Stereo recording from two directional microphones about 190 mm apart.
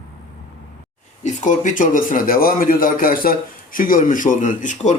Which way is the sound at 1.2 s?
40° left (ahead or behind).